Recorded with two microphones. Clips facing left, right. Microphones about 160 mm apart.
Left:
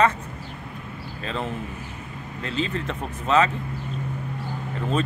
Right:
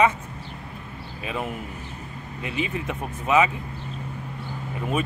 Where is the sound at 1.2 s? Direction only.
10° right (ahead or behind).